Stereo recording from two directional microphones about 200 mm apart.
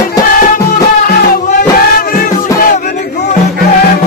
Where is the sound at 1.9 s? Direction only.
45° left (ahead or behind).